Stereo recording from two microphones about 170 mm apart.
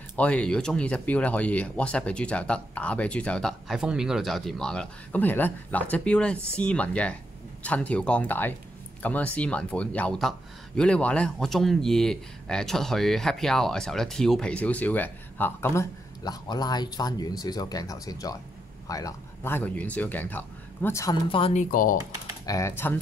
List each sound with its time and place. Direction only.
0.1 s speech: 5° left (ahead or behind)
21.3 s speech: 30° left (ahead or behind)
21.5 s speech: 55° left (ahead or behind)
22.5 s speech: 15° left (ahead or behind)